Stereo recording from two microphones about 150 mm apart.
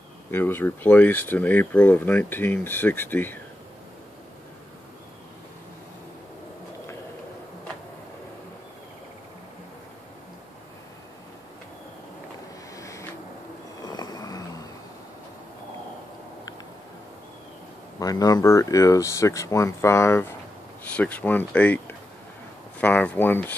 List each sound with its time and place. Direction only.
0.3 s speech: 15° left (ahead or behind)
12.7 s a sound: 20° left (ahead or behind)
17.9 s speech: 25° left (ahead or behind)